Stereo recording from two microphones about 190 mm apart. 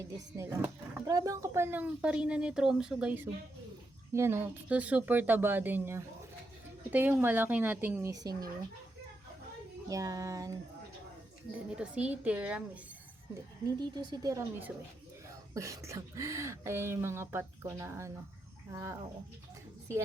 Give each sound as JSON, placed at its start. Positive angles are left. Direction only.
{"t": 0.3, "sound": "speech", "side_deg": -15}
{"t": 9.9, "sound": "speech", "side_deg": -15}
{"t": 11.7, "sound": "speech", "side_deg": -5}
{"t": 13.7, "sound": "speech", "side_deg": -25}